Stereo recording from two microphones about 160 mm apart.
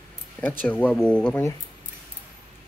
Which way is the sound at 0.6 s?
10° left (ahead or behind).